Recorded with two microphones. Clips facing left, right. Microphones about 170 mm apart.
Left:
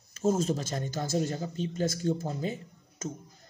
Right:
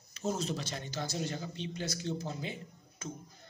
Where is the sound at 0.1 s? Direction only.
45° left (ahead or behind).